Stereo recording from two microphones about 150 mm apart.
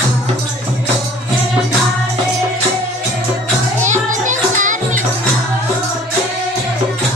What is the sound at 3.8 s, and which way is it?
Music, 55° right (ahead or behind).